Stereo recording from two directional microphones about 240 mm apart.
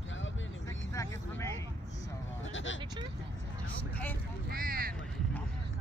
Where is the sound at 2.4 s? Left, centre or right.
Left.